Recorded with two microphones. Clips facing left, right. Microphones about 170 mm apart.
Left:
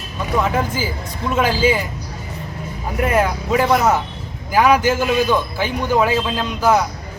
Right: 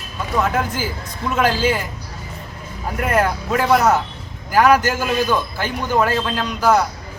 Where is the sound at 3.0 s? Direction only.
5° left (ahead or behind).